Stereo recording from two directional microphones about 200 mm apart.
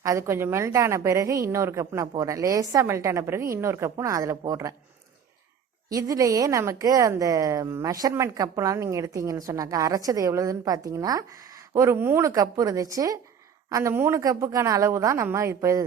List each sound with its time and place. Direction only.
0.0 s a woman's voice: 15° right (ahead or behind)
5.9 s a woman's voice: 15° right (ahead or behind)